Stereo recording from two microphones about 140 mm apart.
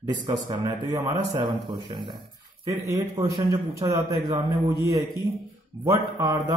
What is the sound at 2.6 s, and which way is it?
Speech, 20° right (ahead or behind).